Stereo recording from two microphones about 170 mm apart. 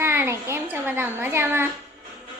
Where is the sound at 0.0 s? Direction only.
15° right (ahead or behind).